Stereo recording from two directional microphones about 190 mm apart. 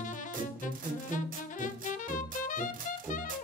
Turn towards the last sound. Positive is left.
turn(degrees=45)  # may be behind; listen again after turning